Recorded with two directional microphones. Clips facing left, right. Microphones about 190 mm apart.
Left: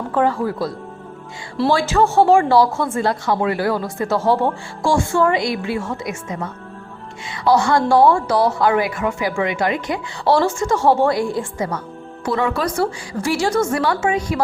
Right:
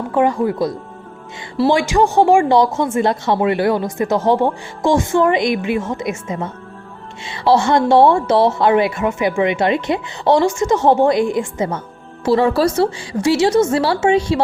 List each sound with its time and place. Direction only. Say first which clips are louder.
0.1 s speech: right 3 dB; 15° right (ahead or behind)
1.7 s speech: right 1 dB; 15° right (ahead or behind)